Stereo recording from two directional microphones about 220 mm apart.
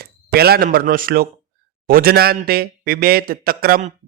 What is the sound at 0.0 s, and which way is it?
Speech, 45° right (ahead or behind).